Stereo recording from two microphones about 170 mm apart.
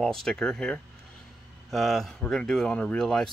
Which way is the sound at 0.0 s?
Centre (ahead or behind).